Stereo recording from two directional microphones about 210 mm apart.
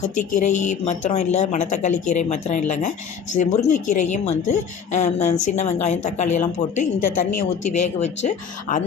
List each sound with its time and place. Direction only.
0.2 s a woman's voice: 35° left (ahead or behind)